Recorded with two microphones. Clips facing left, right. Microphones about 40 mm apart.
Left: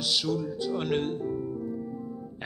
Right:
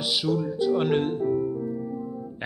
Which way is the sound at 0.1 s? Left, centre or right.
Centre.